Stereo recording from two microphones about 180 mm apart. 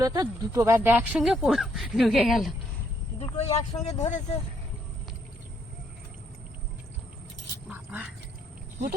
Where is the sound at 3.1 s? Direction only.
35° left (ahead or behind).